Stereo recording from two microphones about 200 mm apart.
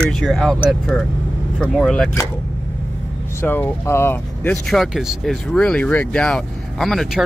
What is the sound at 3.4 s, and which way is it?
Speech, 10° left (ahead or behind).